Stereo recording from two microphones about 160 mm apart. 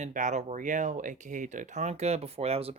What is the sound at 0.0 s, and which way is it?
Speech, 50° right (ahead or behind).